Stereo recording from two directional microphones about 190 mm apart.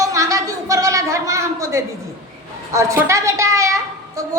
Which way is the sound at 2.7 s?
15° right (ahead or behind).